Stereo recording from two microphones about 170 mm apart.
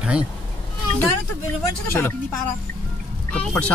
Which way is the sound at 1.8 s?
15° left (ahead or behind).